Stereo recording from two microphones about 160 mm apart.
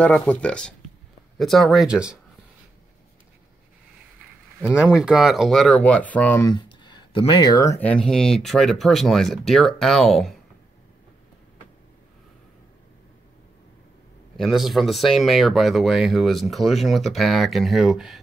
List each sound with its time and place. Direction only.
0.2 s speech: 10° left (ahead or behind)
4.6 s speech: 5° right (ahead or behind); by 6.4 s 10° left (ahead or behind)
6.4 s speech: 25° left (ahead or behind)
7.8 s speech: 5° left (ahead or behind)
14.3 s speech: centre (ahead or behind)